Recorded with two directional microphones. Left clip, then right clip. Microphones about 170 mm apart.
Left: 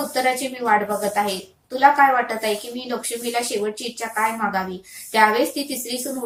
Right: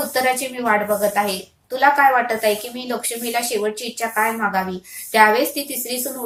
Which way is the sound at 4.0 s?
20° right (ahead or behind).